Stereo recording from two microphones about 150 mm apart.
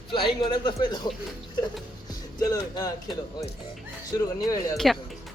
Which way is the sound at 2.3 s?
25° left (ahead or behind).